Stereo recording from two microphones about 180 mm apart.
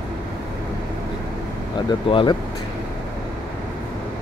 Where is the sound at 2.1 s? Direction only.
30° left (ahead or behind).